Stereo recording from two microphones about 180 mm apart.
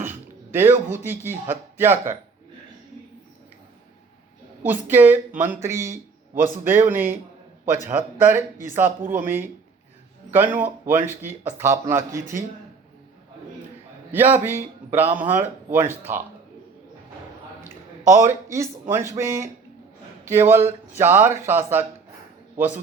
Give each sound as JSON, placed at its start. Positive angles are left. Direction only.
{"t": 0.0, "sound": "a sound", "side_deg": -10}
{"t": 0.9, "sound": "speech", "side_deg": -10}
{"t": 4.6, "sound": "speech", "side_deg": -10}
{"t": 14.1, "sound": "speech", "side_deg": -10}
{"t": 18.1, "sound": "speech", "side_deg": -15}